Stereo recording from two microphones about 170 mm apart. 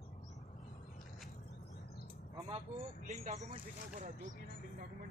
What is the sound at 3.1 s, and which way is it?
Speech, 45° right (ahead or behind).